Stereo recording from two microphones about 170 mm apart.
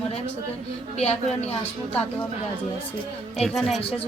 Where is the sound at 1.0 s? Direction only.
40° left (ahead or behind).